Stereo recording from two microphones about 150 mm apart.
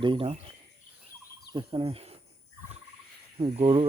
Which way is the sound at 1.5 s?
35° right (ahead or behind).